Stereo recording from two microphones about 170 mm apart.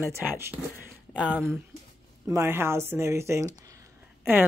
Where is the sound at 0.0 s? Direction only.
15° right (ahead or behind).